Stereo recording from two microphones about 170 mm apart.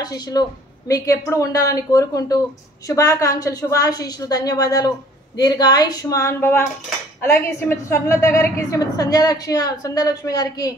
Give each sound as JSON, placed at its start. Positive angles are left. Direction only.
{"t": 0.0, "sound": "a woman's voice", "side_deg": 20}